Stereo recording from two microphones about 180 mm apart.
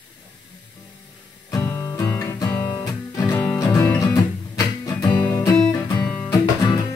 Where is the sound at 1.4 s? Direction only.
15° left (ahead or behind).